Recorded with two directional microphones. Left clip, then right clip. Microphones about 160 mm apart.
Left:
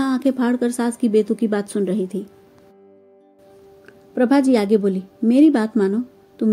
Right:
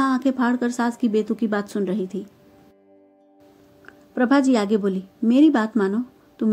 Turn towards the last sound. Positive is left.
turn(degrees=25)  # may be behind; listen again after turning